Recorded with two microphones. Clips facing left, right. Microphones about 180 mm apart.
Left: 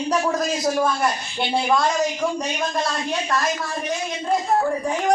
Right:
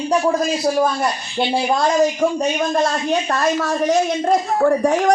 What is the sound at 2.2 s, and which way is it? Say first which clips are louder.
Speech: right 6 dB; 55° right (ahead or behind).